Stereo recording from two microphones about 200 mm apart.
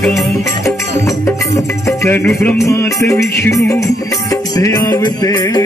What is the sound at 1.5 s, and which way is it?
Music, 15° left (ahead or behind).